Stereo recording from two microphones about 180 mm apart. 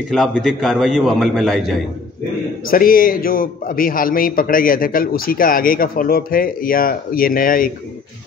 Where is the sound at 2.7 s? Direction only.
50° left (ahead or behind).